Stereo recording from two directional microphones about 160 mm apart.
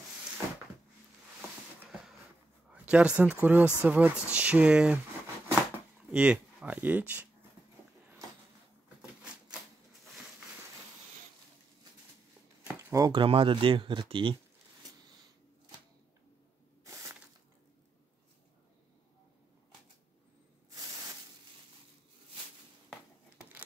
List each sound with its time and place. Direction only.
2.7 s speech: 10° right (ahead or behind)
6.0 s speech: 5° right (ahead or behind)
8.8 s a sound: 5° right (ahead or behind)
12.9 s speech: 20° right (ahead or behind)
13.2 s speech: 35° right (ahead or behind)
16.8 s a sound: 20° right (ahead or behind)